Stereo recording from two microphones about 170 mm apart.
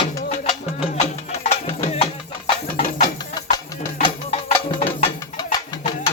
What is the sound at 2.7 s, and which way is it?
Music, 55° left (ahead or behind).